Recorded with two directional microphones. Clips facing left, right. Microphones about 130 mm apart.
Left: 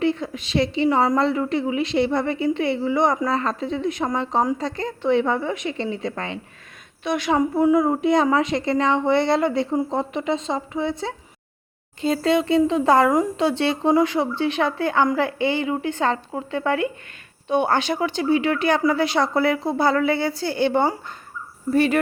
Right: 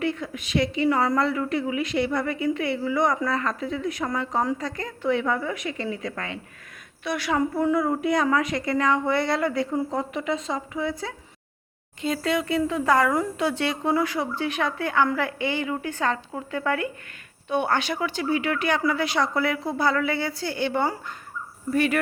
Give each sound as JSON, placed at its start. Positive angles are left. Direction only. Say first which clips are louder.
{"t": 0.0, "sound": "a woman's voice", "louder": "left 5 dB", "side_deg": 25}